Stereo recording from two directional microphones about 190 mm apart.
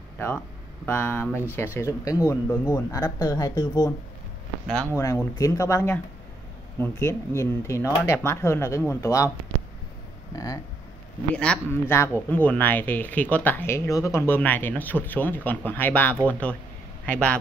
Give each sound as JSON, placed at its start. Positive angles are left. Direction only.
{"t": 0.8, "sound": "speech", "side_deg": 10}
{"t": 4.6, "sound": "speech", "side_deg": 5}
{"t": 5.0, "sound": "speech", "side_deg": 15}
{"t": 10.3, "sound": "speech", "side_deg": 20}
{"t": 11.3, "sound": "speech", "side_deg": 5}